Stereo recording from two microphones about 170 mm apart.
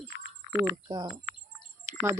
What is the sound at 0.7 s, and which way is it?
Speech, 25° right (ahead or behind).